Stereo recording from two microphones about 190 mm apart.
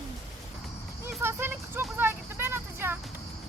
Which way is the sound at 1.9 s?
10° right (ahead or behind).